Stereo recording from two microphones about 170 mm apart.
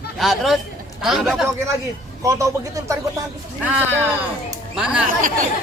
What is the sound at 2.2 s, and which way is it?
Speech, 20° right (ahead or behind).